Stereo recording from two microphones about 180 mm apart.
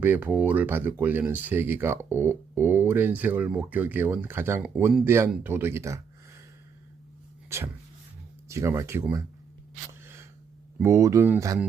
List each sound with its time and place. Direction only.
0.0 s speech: 10° right (ahead or behind)
7.5 s speech: 15° right (ahead or behind)
10.8 s speech: 15° right (ahead or behind)